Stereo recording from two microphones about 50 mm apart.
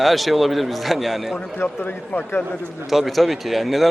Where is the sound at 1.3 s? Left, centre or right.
Left.